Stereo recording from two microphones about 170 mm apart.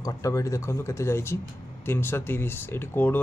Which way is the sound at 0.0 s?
20° left (ahead or behind).